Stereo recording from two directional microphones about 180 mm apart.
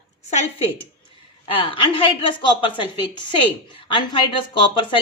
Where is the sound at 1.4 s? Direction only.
30° left (ahead or behind).